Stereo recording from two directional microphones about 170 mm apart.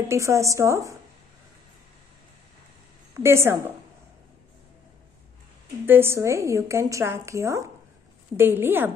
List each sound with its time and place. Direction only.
0.1 s a woman's voice: 15° right (ahead or behind)
3.2 s a woman's voice: 15° right (ahead or behind)
5.9 s a woman's voice: 15° right (ahead or behind)